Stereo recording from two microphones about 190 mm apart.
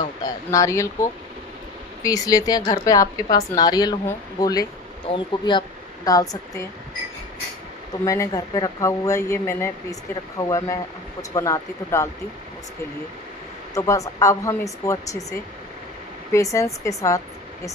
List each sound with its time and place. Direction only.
0.2 s speech: 15° left (ahead or behind)
2.0 s a woman's voice: 20° left (ahead or behind)
8.0 s speech: 20° left (ahead or behind)
13.7 s speech: 15° left (ahead or behind)
16.3 s speech: 15° left (ahead or behind)